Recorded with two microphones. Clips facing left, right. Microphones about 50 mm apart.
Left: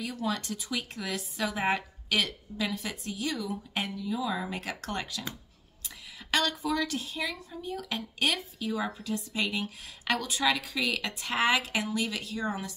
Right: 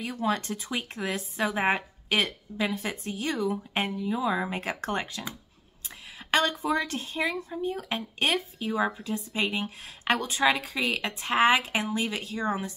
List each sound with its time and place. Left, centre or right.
0.0 s a woman's voice: right
6.3 s speech: right